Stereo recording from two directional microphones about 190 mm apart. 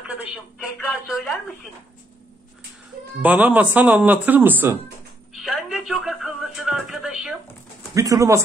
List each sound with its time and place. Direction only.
0.1 s a woman's voice: 5° right (ahead or behind)
3.2 s speech: 10° right (ahead or behind)
7.9 s speech: 15° right (ahead or behind)